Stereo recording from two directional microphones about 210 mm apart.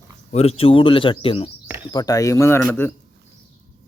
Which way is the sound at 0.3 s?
30° left (ahead or behind).